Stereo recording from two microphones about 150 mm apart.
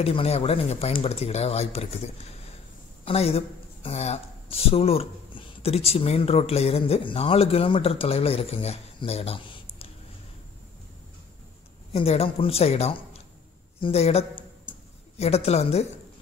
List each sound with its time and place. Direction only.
0.0 s speech: 40° left (ahead or behind)
3.1 s speech: 40° left (ahead or behind)
11.9 s speech: 40° left (ahead or behind)
13.7 s a sound: 40° left (ahead or behind)